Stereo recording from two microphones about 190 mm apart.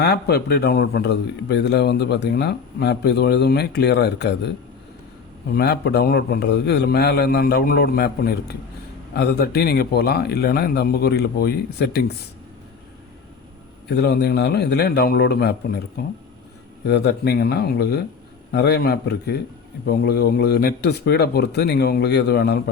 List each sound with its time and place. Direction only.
0.0 s a man's voice: 60° left (ahead or behind)
5.5 s a man's voice: 60° left (ahead or behind)
13.9 s a man's voice: 60° left (ahead or behind)
16.8 s a man's voice: 60° left (ahead or behind)